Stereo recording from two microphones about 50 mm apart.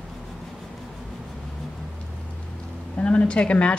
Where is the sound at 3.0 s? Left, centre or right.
Left.